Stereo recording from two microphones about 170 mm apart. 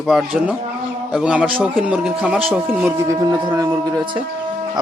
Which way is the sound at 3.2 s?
20° right (ahead or behind).